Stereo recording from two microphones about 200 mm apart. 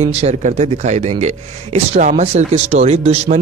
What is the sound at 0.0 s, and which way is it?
Speech, 30° right (ahead or behind).